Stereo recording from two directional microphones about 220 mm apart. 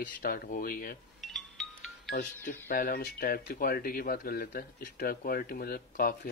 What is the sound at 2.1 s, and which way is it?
Speech, 35° left (ahead or behind).